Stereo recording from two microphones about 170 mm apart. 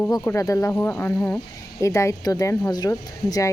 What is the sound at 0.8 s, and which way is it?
Speech, centre (ahead or behind).